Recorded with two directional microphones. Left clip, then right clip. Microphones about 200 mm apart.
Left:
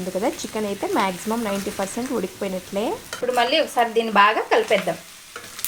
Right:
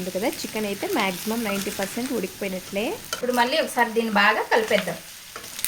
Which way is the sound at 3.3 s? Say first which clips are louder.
Left 2 dB; 25° left (ahead or behind).